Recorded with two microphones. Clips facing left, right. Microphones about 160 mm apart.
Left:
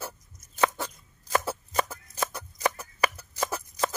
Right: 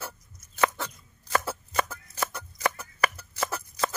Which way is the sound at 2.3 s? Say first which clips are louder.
Left 1 dB; 20° left (ahead or behind).